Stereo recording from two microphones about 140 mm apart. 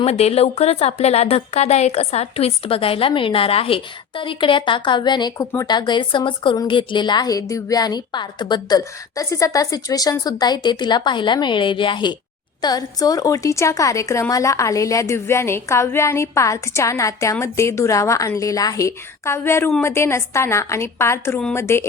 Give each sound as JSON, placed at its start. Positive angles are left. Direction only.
{"t": 0.0, "sound": "a woman's voice", "side_deg": 45}